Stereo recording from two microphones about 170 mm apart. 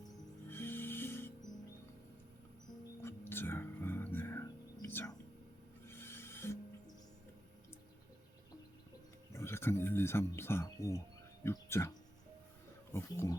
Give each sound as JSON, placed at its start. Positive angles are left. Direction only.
{"t": 0.4, "sound": "music", "side_deg": 15}
{"t": 3.0, "sound": "whispering", "side_deg": 15}
{"t": 5.9, "sound": "filing", "side_deg": 15}
{"t": 9.3, "sound": "a sound", "side_deg": 15}
{"t": 11.4, "sound": "speech", "side_deg": 15}